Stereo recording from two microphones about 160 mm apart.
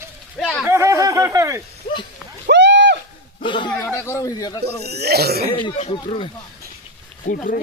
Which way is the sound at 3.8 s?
15° left (ahead or behind).